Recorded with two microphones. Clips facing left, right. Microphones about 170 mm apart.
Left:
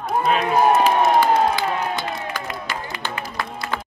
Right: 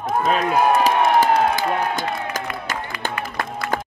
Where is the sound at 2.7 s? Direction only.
45° right (ahead or behind).